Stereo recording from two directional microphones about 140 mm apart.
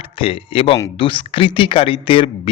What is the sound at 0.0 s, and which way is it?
A man's voice, 40° left (ahead or behind).